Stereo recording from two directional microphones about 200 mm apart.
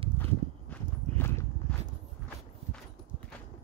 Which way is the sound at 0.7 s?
10° left (ahead or behind).